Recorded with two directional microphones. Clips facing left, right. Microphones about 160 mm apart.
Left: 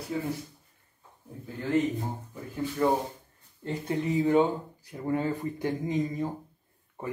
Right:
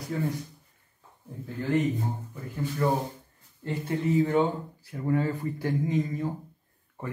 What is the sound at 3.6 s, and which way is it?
Speech, 15° left (ahead or behind).